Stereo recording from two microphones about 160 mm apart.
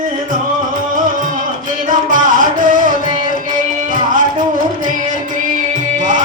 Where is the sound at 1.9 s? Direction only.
55° right (ahead or behind).